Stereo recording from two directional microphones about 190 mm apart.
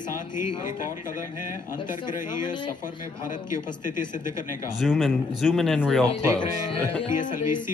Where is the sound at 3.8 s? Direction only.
45° left (ahead or behind).